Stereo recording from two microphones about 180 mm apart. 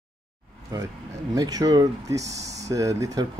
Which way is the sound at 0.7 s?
20° right (ahead or behind).